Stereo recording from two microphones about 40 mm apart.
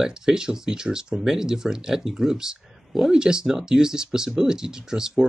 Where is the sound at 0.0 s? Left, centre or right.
Centre.